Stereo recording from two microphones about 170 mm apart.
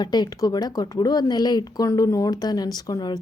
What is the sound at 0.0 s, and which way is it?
Speech, 25° left (ahead or behind).